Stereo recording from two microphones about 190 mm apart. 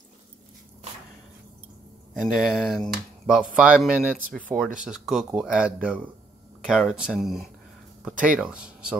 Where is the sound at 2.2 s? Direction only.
Centre (ahead or behind).